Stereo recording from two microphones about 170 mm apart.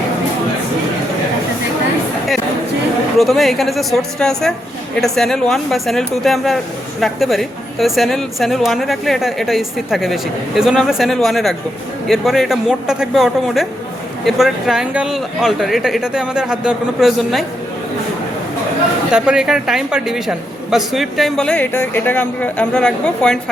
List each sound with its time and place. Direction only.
3.2 s a woman's voice: centre (ahead or behind)
19.1 s a woman's voice: 5° right (ahead or behind)